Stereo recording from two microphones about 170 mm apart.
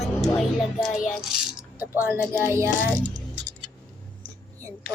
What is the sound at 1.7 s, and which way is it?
A child's voice, 10° right (ahead or behind).